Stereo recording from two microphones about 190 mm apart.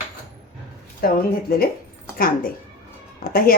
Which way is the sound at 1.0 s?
55° left (ahead or behind).